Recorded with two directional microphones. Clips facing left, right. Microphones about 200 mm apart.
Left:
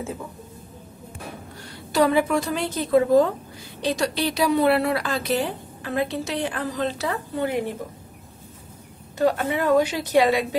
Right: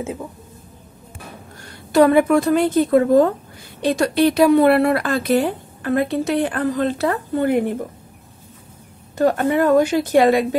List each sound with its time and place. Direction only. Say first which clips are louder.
1.9 s a woman's voice: right 6 dB; 55° right (ahead or behind)
9.2 s a woman's voice: right 5 dB; 50° right (ahead or behind)